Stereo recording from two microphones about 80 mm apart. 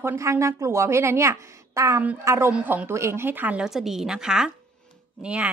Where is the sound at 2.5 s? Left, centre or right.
Centre.